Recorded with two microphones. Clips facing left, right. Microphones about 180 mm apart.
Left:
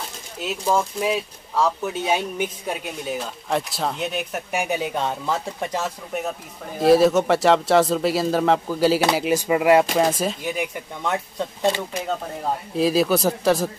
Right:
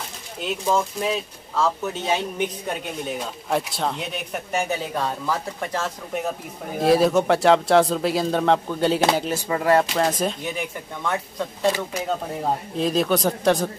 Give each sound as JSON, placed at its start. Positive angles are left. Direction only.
{"t": 0.4, "sound": "speech", "side_deg": 5}
{"t": 4.6, "sound": "speech", "side_deg": 15}
{"t": 6.8, "sound": "speech", "side_deg": 0}
{"t": 11.1, "sound": "speech", "side_deg": 20}
{"t": 12.7, "sound": "speech", "side_deg": 5}